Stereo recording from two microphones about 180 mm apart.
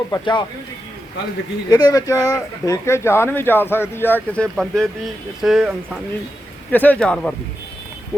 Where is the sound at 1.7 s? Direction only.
20° left (ahead or behind); by 5.8 s centre (ahead or behind).